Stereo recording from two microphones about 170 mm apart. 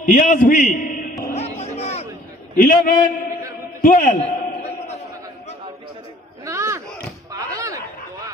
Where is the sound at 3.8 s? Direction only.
55° left (ahead or behind).